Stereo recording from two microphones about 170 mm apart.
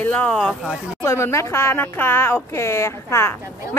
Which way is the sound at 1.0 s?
15° left (ahead or behind).